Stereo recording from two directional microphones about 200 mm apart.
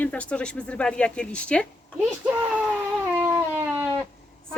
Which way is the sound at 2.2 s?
10° right (ahead or behind).